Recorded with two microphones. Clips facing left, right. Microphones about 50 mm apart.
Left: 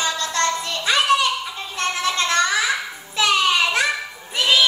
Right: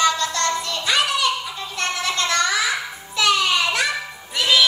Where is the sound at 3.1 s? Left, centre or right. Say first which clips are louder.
Left 1 dB; left.